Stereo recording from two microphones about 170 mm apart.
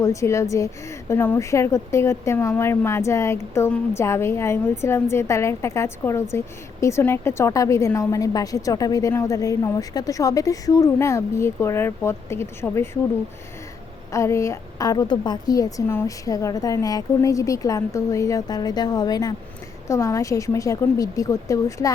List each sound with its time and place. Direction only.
0.0 s speech: 20° left (ahead or behind)
14.1 s a woman's voice: 15° left (ahead or behind)